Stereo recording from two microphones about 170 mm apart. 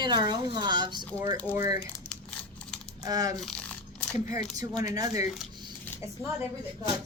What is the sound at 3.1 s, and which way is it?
Speech, 20° right (ahead or behind).